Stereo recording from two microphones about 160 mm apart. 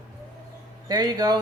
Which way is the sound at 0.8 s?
25° right (ahead or behind).